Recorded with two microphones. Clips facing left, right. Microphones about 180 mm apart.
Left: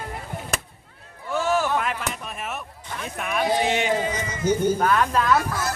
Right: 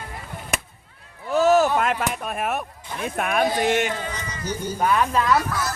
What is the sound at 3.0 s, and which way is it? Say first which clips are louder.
Speech: right 3 dB; 55° right (ahead or behind).